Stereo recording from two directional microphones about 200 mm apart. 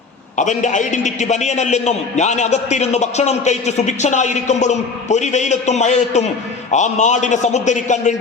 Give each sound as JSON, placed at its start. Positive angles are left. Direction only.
{"t": 0.3, "sound": "a man's voice", "side_deg": 40}